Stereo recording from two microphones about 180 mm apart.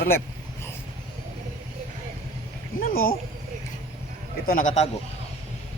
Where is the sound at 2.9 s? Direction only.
55° left (ahead or behind).